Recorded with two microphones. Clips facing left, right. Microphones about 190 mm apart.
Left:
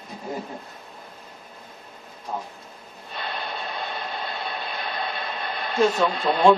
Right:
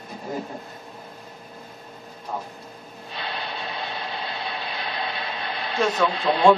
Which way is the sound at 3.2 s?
50° left (ahead or behind).